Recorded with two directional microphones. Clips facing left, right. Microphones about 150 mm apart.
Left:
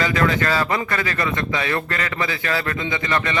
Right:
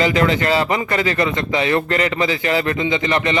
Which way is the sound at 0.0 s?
25° right (ahead or behind).